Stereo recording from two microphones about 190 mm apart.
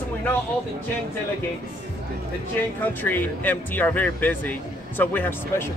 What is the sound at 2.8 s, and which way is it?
Speech, 10° left (ahead or behind).